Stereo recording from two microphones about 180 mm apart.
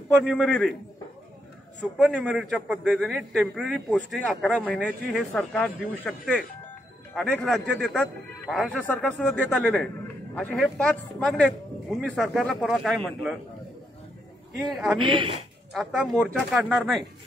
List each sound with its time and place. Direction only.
0.2 s speech: centre (ahead or behind)
2.0 s speech: centre (ahead or behind)
14.7 s speech: centre (ahead or behind)
15.0 s a woman's voice: 30° right (ahead or behind)
15.7 s speech: centre (ahead or behind)